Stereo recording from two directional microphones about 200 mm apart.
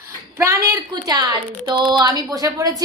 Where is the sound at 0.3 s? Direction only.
10° right (ahead or behind).